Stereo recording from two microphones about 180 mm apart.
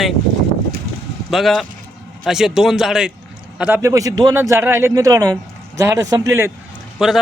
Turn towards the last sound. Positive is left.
turn(degrees=-5)  # may be behind; listen again after turning